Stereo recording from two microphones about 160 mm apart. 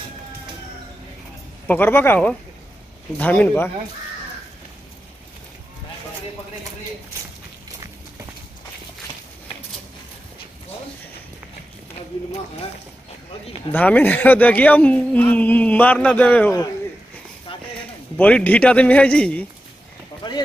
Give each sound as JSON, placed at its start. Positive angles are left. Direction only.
{"t": 1.7, "sound": "speech", "side_deg": 15}
{"t": 13.7, "sound": "speech", "side_deg": 10}
{"t": 18.1, "sound": "speech", "side_deg": 10}
{"t": 20.2, "sound": "a sound", "side_deg": 30}